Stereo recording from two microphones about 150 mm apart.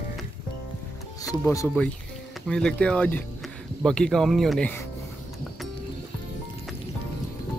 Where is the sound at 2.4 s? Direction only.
5° left (ahead or behind).